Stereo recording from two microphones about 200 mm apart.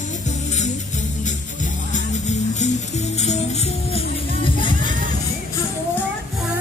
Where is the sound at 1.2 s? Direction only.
35° left (ahead or behind).